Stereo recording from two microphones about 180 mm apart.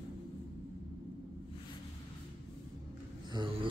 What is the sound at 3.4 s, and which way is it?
Speech, 25° right (ahead or behind).